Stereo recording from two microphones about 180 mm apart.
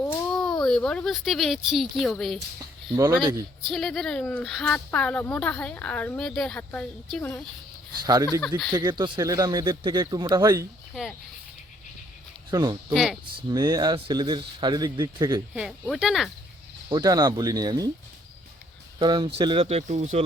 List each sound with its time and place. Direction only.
0.0 s a child's voice: 5° left (ahead or behind)
3.7 s speech: centre (ahead or behind)
7.9 s speech: 20° right (ahead or behind)
12.5 s speech: 20° right (ahead or behind)
12.9 s speech: 5° right (ahead or behind)
13.2 s speech: 25° right (ahead or behind)
15.5 s speech: 5° right (ahead or behind)
16.9 s speech: 20° right (ahead or behind)
18.9 s speech: 25° right (ahead or behind)